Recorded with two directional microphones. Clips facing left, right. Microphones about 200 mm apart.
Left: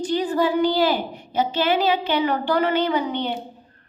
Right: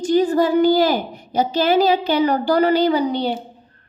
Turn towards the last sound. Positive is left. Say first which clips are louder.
# right 5 dB
turn(degrees=-35)  # may be behind; listen again after turning